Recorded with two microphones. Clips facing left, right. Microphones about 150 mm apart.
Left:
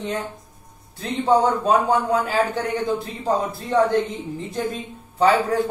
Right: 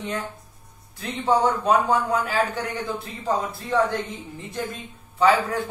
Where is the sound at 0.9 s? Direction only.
35° left (ahead or behind).